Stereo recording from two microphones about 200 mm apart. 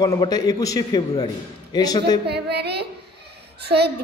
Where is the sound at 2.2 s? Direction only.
55° right (ahead or behind).